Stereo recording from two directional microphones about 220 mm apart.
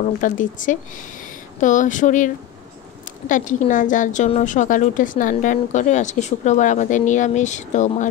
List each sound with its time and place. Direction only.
0.0 s a woman's voice: 35° left (ahead or behind)